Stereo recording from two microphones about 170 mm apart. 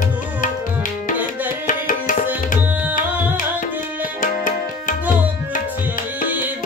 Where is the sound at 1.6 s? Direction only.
50° left (ahead or behind).